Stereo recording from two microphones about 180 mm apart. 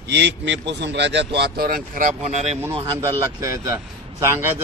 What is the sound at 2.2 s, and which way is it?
Speech, 35° right (ahead or behind).